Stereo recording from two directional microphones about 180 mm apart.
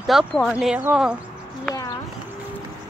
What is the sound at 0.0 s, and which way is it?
Speech, centre (ahead or behind).